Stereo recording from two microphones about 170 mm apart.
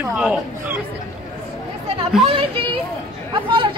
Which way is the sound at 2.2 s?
35° right (ahead or behind).